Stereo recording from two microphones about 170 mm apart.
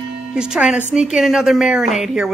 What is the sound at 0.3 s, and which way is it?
Speech, 5° right (ahead or behind).